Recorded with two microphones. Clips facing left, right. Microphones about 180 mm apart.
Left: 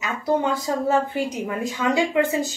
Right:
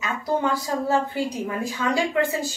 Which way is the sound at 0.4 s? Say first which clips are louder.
Left 1 dB; 20° left (ahead or behind).